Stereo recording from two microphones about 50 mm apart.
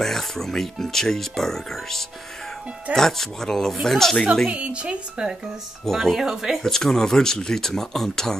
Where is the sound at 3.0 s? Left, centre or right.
Centre.